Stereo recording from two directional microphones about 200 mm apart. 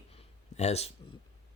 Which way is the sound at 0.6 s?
30° left (ahead or behind).